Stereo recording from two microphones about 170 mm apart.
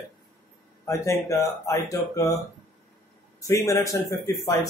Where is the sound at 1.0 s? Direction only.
20° left (ahead or behind).